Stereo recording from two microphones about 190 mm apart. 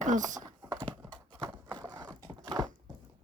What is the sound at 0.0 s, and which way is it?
Speech, 40° right (ahead or behind).